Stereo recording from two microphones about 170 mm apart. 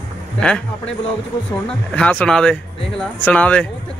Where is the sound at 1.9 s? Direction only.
5° left (ahead or behind).